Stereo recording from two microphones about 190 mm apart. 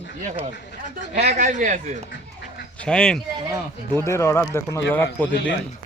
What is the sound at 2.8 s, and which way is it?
Speech, 5° left (ahead or behind).